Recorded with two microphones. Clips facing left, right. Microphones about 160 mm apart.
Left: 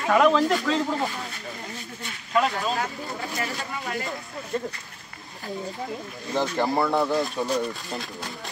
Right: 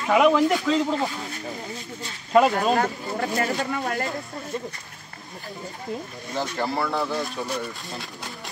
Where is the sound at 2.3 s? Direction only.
40° right (ahead or behind).